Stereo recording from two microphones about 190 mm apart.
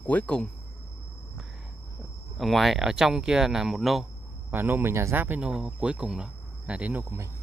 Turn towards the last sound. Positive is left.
turn(degrees=-10)  # may be behind; listen again after turning